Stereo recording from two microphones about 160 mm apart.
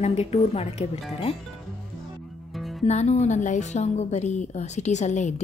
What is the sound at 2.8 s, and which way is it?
A woman's voice, 45° left (ahead or behind).